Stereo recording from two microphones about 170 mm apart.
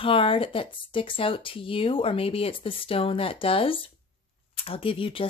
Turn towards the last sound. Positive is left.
turn(degrees=30)  # may be behind; listen again after turning